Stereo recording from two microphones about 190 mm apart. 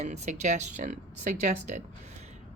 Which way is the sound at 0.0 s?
40° right (ahead or behind).